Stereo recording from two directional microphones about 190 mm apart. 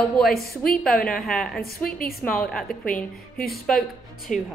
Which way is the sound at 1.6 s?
55° left (ahead or behind).